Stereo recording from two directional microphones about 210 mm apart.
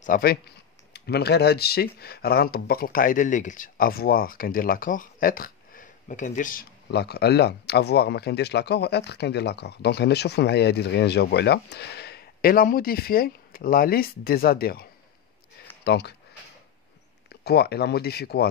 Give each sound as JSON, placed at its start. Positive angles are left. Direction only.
{"t": 0.0, "sound": "speech", "side_deg": 45}
{"t": 17.5, "sound": "speech", "side_deg": 50}